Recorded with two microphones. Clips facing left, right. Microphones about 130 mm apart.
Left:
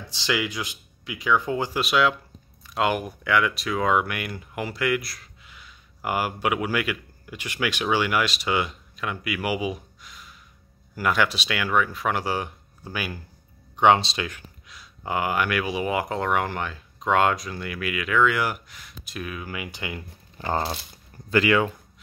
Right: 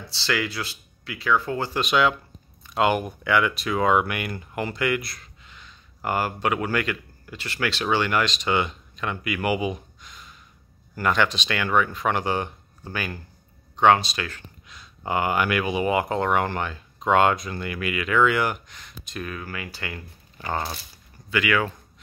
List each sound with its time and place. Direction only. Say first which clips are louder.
0.0 s speech: even; 15° left (ahead or behind)
13.7 s speech: even; 20° left (ahead or behind)
14.7 s speech: right 2 dB; centre (ahead or behind)
20.3 s speech: left 2 dB; 30° left (ahead or behind)